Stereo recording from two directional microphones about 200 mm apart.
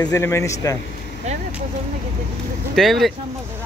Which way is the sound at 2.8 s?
Centre (ahead or behind).